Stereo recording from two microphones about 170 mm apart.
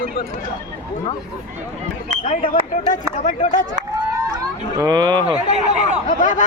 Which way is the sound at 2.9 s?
45° left (ahead or behind).